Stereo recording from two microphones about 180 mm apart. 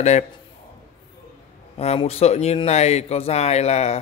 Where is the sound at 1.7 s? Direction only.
35° left (ahead or behind).